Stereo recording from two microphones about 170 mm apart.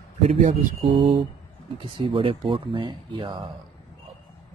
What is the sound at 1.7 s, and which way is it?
Speech, 30° right (ahead or behind).